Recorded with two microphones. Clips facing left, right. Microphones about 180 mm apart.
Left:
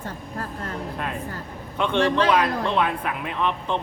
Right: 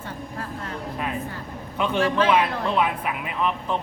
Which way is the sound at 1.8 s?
5° right (ahead or behind).